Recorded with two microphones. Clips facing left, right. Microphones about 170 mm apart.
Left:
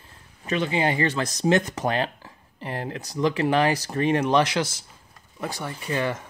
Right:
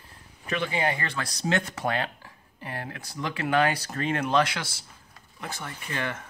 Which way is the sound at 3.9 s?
20° left (ahead or behind).